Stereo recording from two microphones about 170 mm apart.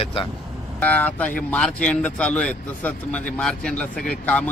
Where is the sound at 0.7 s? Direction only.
10° left (ahead or behind).